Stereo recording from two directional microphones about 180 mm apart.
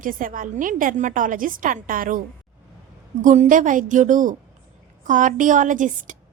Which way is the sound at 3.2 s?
45° right (ahead or behind).